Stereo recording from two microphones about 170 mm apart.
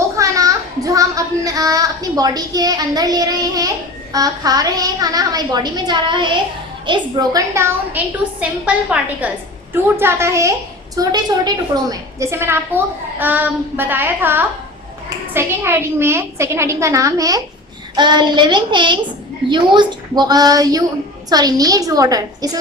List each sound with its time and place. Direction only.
0.2 s child singing: 20° right (ahead or behind)
4.1 s a woman's voice: 20° right (ahead or behind)